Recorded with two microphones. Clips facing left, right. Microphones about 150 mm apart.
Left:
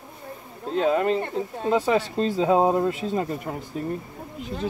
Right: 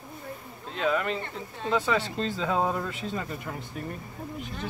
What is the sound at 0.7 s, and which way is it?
Speech, 25° left (ahead or behind).